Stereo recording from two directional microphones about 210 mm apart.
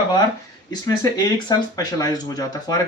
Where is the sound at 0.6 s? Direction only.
20° left (ahead or behind).